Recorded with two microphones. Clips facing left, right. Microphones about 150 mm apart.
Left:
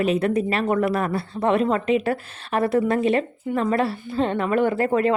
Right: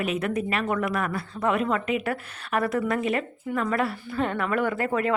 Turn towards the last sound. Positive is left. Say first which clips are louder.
# left 5 dB
turn(degrees=30)  # may be behind; listen again after turning